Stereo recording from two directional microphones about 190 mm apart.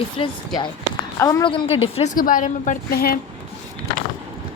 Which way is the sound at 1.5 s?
25° left (ahead or behind).